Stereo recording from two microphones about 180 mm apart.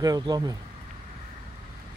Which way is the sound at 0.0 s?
20° right (ahead or behind).